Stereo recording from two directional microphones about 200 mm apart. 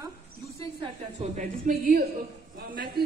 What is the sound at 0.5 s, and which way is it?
A woman's voice, 30° right (ahead or behind).